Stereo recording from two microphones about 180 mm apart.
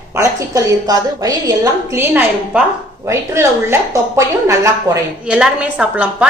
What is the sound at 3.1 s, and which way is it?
Speech, 15° right (ahead or behind).